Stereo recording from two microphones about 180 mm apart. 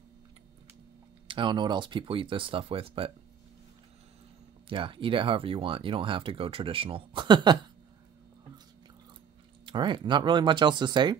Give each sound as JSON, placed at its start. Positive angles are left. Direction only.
{"t": 1.2, "sound": "speech", "side_deg": -25}
{"t": 4.6, "sound": "speech", "side_deg": -30}
{"t": 9.7, "sound": "speech", "side_deg": -25}